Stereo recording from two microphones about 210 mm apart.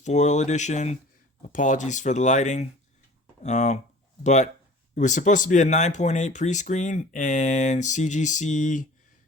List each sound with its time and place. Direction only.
0.0 s speech: 35° left (ahead or behind)